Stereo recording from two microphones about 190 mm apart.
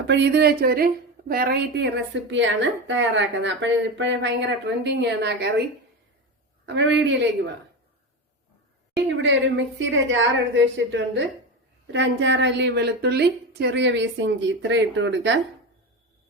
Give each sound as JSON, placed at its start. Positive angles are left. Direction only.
{"t": 0.1, "sound": "a woman's voice", "side_deg": -65}
{"t": 6.7, "sound": "a woman's voice", "side_deg": -70}
{"t": 9.0, "sound": "a woman's voice", "side_deg": -75}